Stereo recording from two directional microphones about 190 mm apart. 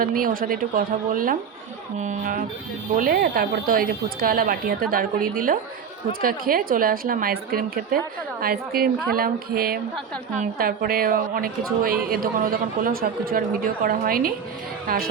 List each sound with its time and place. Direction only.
0.0 s a woman's voice: 50° right (ahead or behind)